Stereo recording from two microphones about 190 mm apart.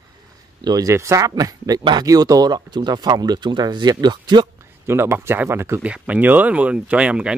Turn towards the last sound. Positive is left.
turn(degrees=-5)  # may be behind; listen again after turning